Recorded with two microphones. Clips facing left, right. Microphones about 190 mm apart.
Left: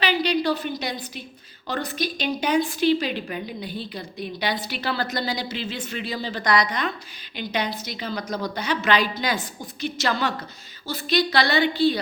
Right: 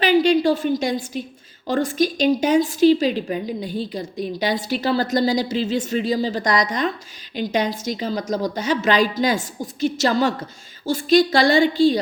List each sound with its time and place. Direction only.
0.0 s a woman's voice: 45° right (ahead or behind)